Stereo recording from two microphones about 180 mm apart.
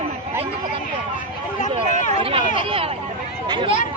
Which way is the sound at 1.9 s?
30° right (ahead or behind).